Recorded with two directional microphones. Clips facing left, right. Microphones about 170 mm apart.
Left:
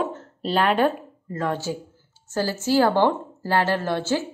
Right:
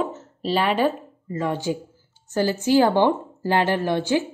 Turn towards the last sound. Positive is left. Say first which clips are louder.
# right 3 dB
turn(degrees=-15)  # may be behind; listen again after turning